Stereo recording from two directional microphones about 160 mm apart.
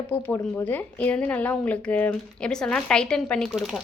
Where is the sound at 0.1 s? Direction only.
10° left (ahead or behind).